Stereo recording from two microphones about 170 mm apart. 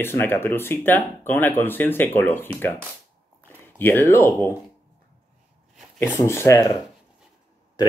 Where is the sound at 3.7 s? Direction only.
15° left (ahead or behind).